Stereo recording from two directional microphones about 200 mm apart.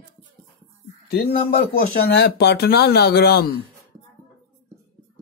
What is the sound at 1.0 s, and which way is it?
Speech, 50° left (ahead or behind).